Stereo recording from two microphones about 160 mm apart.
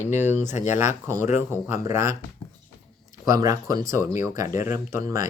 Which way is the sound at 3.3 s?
20° right (ahead or behind).